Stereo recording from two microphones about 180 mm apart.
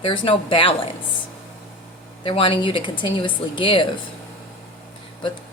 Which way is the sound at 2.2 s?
30° left (ahead or behind).